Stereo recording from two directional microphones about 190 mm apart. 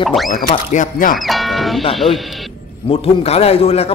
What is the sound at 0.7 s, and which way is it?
Speech, 40° left (ahead or behind).